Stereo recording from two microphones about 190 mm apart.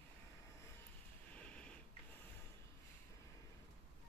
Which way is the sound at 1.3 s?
5° left (ahead or behind).